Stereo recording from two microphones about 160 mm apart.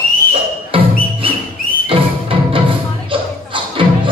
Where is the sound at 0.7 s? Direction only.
35° right (ahead or behind).